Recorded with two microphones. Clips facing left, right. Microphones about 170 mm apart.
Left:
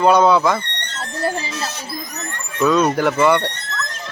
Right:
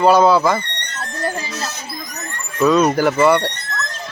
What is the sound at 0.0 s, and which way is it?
Speech, 5° right (ahead or behind).